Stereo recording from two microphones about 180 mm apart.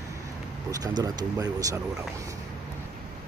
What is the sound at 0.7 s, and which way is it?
Speech, 20° right (ahead or behind).